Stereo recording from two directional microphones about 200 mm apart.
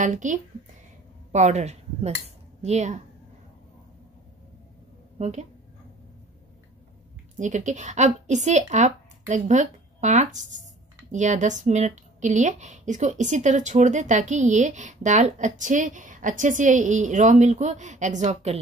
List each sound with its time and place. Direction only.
0.0 s speech: 40° right (ahead or behind)
5.2 s speech: 35° right (ahead or behind)
7.3 s speech: 35° right (ahead or behind)